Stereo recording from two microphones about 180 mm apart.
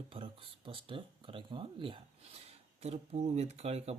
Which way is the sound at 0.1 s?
30° right (ahead or behind).